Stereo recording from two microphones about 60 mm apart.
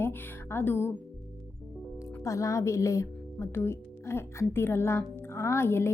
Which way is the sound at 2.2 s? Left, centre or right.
Left.